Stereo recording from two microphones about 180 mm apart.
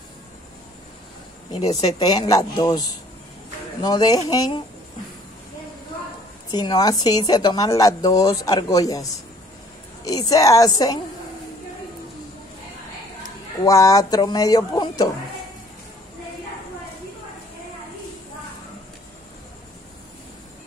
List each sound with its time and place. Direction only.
1.5 s speech: 20° left (ahead or behind)
6.5 s speech: 20° left (ahead or behind)
13.7 s speech: 20° left (ahead or behind)